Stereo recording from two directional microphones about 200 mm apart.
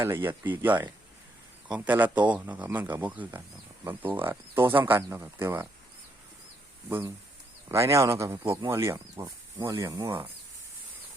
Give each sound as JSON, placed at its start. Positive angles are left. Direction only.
{"t": 0.0, "sound": "speech", "side_deg": -10}
{"t": 1.9, "sound": "speech", "side_deg": -10}
{"t": 7.7, "sound": "speech", "side_deg": -15}